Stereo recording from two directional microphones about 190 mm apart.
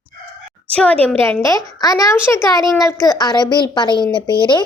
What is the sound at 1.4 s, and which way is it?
A woman's voice, 20° left (ahead or behind).